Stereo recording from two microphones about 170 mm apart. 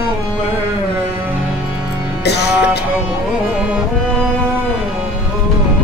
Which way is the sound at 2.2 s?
80° left.